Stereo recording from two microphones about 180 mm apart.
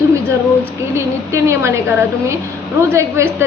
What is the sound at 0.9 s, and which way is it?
A woman's voice, 15° right (ahead or behind).